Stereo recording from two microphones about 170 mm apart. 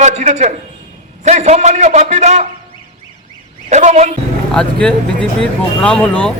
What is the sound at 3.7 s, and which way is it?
Speech, 40° right (ahead or behind).